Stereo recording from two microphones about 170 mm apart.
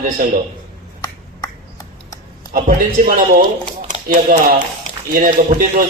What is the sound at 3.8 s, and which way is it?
A man's voice, 55° right (ahead or behind).